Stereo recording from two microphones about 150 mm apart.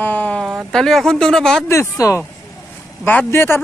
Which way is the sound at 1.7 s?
20° left (ahead or behind).